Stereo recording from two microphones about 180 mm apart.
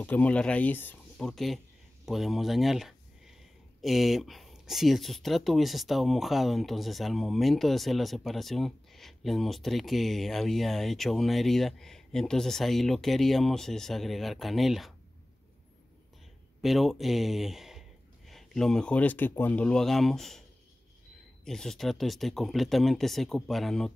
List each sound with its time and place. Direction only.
0.0 s speech: 10° left (ahead or behind)
16.6 s speech: centre (ahead or behind)
21.5 s speech: centre (ahead or behind)